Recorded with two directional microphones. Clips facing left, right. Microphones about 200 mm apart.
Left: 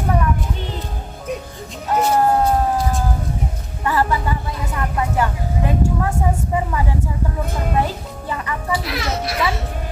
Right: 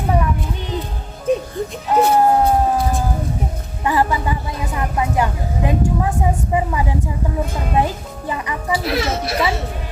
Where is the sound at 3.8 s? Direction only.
15° right (ahead or behind).